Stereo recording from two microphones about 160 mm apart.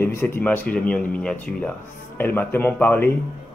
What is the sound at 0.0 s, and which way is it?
Speech, 15° left (ahead or behind).